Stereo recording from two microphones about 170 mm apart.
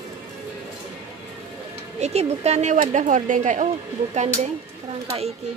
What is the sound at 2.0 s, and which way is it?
Speech, 40° right (ahead or behind).